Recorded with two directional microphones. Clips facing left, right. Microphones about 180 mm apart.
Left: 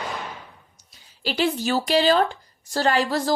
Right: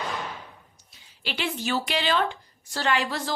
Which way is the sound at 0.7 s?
40° left (ahead or behind).